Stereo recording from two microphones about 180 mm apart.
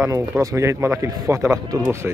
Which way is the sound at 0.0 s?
15° right (ahead or behind).